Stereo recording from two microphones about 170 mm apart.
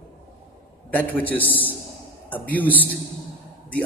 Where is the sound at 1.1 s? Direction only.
10° left (ahead or behind).